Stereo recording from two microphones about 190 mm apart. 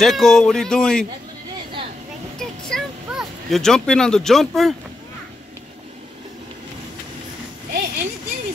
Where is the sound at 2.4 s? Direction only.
Centre (ahead or behind).